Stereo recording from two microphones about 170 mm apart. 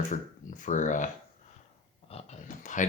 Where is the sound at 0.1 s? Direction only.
45° left (ahead or behind).